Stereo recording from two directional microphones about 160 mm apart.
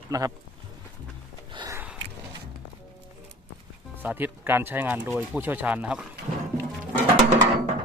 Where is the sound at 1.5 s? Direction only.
20° right (ahead or behind).